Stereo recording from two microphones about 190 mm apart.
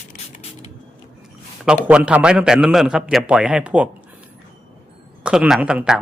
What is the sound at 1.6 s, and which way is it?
Speech, 5° right (ahead or behind).